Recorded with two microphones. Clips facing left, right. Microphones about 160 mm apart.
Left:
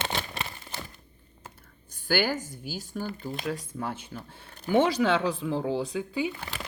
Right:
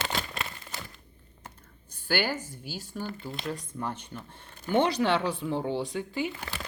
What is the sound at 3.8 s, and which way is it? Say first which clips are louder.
Speech: left 1 dB; 5° left (ahead or behind).